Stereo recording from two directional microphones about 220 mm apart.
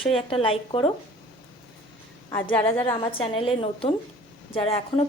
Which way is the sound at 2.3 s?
20° left (ahead or behind).